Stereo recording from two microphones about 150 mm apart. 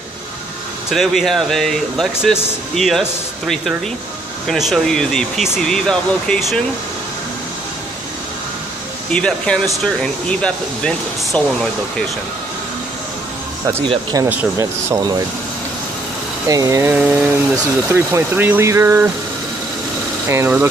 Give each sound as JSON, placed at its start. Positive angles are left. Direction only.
{"t": 0.8, "sound": "speech", "side_deg": 0}
{"t": 9.1, "sound": "speech", "side_deg": 5}
{"t": 11.3, "sound": "speech", "side_deg": 10}
{"t": 13.8, "sound": "speech", "side_deg": -25}
{"t": 16.4, "sound": "speech", "side_deg": -20}
{"t": 20.2, "sound": "speech", "side_deg": -15}